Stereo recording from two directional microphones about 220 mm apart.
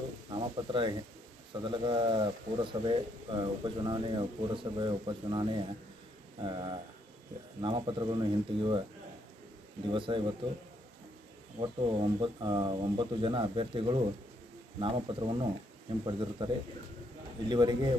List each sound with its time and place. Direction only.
0.3 s speech: 20° right (ahead or behind)
9.8 s speech: 20° right (ahead or behind)
11.6 s speech: 25° right (ahead or behind)
17.5 s speech: 20° right (ahead or behind)